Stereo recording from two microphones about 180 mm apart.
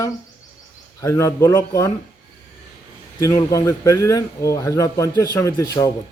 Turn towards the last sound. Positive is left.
turn(degrees=20)  # may be behind; listen again after turning